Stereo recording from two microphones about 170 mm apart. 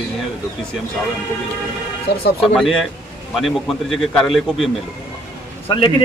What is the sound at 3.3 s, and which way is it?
A man's voice, centre (ahead or behind).